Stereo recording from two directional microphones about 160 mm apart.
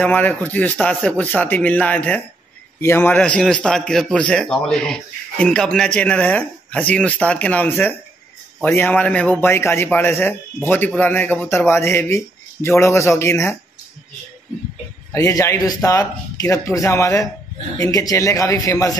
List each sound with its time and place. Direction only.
0.0 s a man's voice: 10° left (ahead or behind)
15.1 s speech: 20° left (ahead or behind)